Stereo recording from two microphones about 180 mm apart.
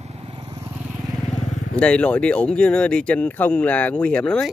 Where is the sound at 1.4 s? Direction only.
45° left (ahead or behind).